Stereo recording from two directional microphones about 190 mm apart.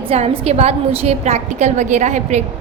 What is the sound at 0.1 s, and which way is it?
A woman's voice, 35° right (ahead or behind).